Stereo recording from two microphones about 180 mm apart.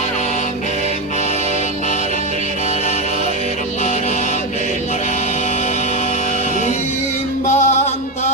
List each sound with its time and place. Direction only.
7.4 s music: 40° left (ahead or behind)